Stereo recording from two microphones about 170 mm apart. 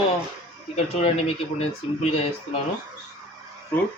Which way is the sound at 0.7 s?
35° left (ahead or behind).